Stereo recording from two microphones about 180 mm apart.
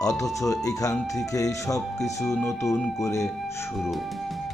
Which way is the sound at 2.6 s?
15° left (ahead or behind).